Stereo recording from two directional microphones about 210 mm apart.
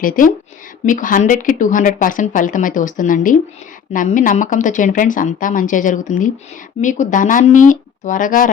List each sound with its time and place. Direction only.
0.0 s speech: 40° left (ahead or behind)